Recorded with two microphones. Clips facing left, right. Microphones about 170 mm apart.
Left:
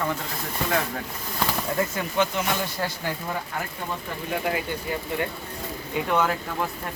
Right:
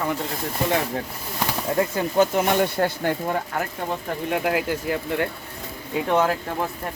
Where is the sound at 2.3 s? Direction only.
55° right (ahead or behind).